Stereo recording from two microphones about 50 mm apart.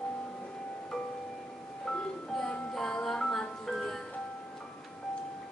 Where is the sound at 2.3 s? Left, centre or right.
Centre.